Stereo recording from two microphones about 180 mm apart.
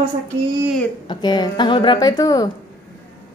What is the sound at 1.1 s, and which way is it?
A woman's voice, 25° left (ahead or behind).